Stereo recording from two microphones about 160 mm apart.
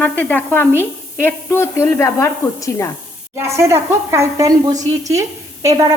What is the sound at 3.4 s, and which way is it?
A woman's voice, 15° right (ahead or behind).